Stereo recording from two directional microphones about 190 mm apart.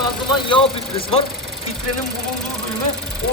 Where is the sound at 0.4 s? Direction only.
25° left (ahead or behind).